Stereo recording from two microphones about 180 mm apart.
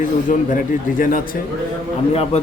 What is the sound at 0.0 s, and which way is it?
Speech, 50° left (ahead or behind).